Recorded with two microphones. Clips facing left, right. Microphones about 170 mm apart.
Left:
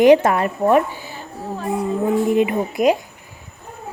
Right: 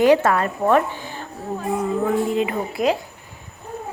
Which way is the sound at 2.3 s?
15° left (ahead or behind).